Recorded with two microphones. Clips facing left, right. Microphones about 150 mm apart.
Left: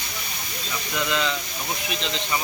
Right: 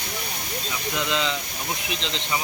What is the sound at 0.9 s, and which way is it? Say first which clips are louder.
Speech: left 1 dB; 20° right (ahead or behind).